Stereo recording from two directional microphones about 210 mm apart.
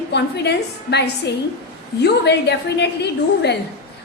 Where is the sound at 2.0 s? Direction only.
55° left (ahead or behind).